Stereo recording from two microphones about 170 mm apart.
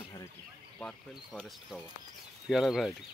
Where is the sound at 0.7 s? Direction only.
Centre (ahead or behind).